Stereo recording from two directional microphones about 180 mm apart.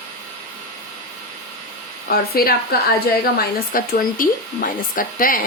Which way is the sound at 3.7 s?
50° left (ahead or behind).